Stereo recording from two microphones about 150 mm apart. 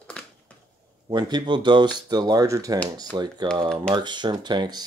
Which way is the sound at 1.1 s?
30° right (ahead or behind).